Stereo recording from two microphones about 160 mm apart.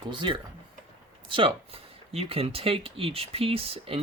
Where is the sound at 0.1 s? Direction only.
30° right (ahead or behind).